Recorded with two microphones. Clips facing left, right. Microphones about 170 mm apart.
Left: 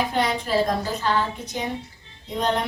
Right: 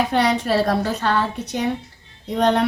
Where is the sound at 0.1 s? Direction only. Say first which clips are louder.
Right 4 dB; 70° right (ahead or behind).